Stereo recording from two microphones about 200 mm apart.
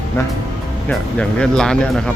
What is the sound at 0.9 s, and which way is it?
Speech, 5° left (ahead or behind).